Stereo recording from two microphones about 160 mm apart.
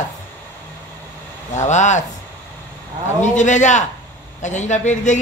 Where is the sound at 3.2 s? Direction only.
50° left (ahead or behind).